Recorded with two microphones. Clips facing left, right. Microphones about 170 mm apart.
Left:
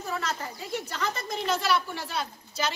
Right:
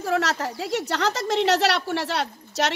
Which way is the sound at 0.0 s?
85° right.